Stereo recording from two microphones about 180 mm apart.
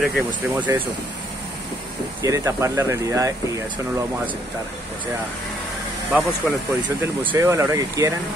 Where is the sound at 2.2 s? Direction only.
15° right (ahead or behind).